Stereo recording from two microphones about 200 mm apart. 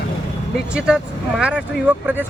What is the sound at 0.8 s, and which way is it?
A man's voice, 5° right (ahead or behind).